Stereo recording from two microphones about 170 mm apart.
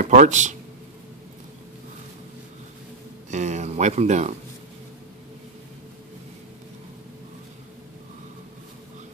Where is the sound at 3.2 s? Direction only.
45° right (ahead or behind).